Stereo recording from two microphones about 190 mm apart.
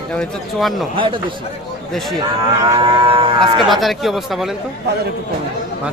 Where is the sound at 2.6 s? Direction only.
20° right (ahead or behind).